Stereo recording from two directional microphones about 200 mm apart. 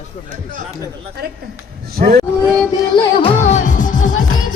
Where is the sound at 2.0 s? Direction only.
45° right (ahead or behind).